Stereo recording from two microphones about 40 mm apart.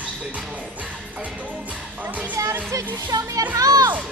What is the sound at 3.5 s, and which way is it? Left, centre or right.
Speech, right.